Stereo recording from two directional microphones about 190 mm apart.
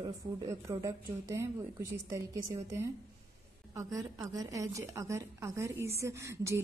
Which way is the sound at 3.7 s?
15° right (ahead or behind).